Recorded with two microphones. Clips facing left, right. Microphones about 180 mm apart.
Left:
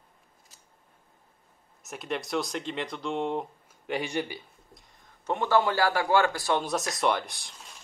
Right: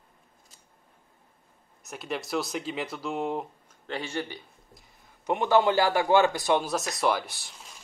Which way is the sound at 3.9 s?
15° left (ahead or behind).